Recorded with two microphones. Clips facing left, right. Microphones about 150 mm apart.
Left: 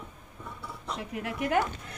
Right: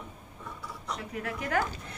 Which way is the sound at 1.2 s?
25° left (ahead or behind).